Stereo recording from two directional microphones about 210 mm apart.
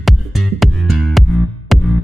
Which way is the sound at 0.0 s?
Centre (ahead or behind).